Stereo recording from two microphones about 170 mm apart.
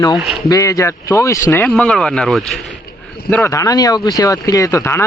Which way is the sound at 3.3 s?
15° left (ahead or behind).